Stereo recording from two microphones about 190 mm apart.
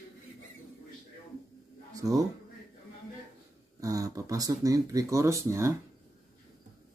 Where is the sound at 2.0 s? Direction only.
20° right (ahead or behind).